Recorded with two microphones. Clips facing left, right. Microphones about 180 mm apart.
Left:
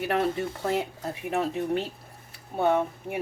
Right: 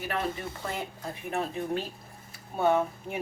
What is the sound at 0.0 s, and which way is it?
Speech, 65° left (ahead or behind).